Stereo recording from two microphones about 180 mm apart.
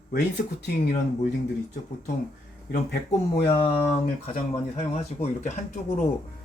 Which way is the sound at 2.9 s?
60° left (ahead or behind).